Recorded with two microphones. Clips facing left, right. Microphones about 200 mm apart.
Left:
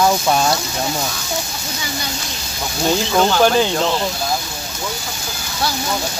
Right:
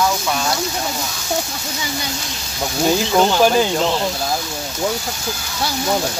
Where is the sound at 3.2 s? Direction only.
10° right (ahead or behind).